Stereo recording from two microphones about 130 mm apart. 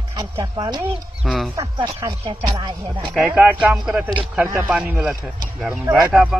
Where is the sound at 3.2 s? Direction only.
10° right (ahead or behind).